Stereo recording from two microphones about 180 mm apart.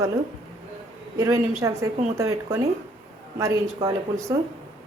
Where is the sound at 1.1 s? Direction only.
15° right (ahead or behind).